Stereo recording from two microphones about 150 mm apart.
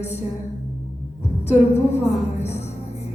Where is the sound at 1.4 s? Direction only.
45° left (ahead or behind).